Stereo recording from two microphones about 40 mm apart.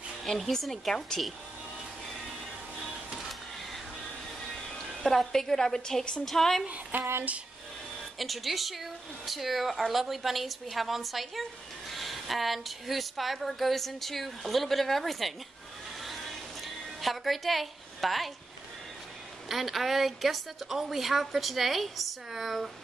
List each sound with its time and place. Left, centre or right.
0.5 s a woman's voice: centre
5.0 s a woman's voice: centre
7.0 s a sound: right
8.2 s a woman's voice: centre
16.6 s music: centre
19.5 s a woman's voice: centre